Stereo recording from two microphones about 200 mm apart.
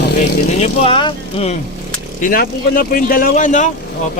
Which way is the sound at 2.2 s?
45° left (ahead or behind).